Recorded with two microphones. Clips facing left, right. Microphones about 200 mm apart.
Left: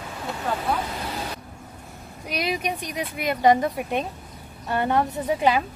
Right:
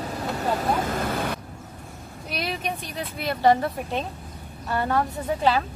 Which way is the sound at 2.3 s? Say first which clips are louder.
Left 3 dB; 10° left (ahead or behind).